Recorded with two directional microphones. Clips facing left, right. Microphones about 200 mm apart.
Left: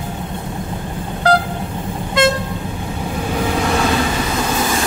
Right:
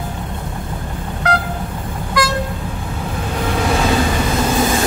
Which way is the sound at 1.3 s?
30° left (ahead or behind).